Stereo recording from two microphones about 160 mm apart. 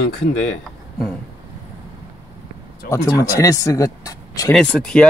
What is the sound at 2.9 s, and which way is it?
Speech, 20° left (ahead or behind).